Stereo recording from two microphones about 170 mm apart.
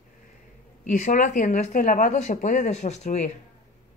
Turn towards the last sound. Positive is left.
turn(degrees=40)  # may be behind; listen again after turning